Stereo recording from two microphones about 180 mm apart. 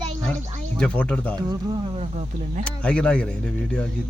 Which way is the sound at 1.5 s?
30° right (ahead or behind).